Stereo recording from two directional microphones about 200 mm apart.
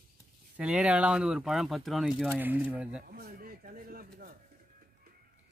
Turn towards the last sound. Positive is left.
turn(degrees=-45)  # may be behind; listen again after turning